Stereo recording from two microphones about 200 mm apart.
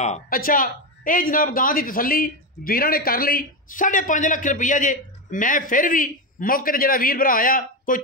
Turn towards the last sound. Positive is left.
turn(degrees=45)  # may be behind; listen again after turning